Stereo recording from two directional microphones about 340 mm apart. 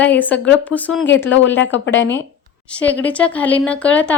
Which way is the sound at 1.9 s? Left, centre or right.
Centre.